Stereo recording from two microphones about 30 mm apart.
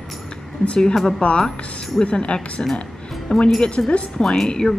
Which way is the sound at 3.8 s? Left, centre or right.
Centre.